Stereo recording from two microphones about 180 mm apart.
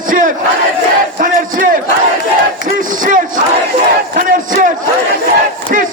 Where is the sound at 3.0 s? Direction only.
50° right (ahead or behind).